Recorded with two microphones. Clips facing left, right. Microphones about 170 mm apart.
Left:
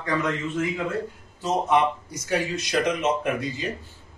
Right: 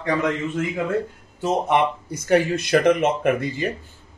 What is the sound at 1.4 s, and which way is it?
A man's voice, 60° right (ahead or behind).